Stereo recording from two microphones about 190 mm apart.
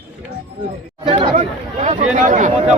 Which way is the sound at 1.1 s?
30° right (ahead or behind).